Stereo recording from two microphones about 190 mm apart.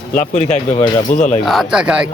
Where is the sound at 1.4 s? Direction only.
Centre (ahead or behind).